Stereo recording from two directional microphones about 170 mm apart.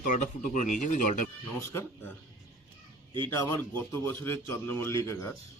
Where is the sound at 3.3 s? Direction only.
15° left (ahead or behind).